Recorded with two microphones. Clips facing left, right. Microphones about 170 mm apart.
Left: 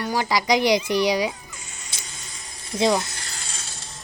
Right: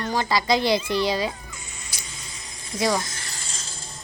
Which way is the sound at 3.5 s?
70° left (ahead or behind).